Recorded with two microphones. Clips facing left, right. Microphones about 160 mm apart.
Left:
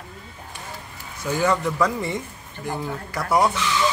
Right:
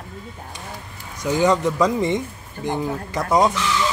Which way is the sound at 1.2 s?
20° right (ahead or behind).